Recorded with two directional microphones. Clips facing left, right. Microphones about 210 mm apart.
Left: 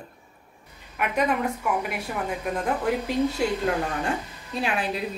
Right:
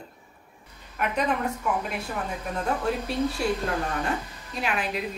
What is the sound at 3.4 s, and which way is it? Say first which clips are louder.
Speech: left 1 dB; 20° left (ahead or behind).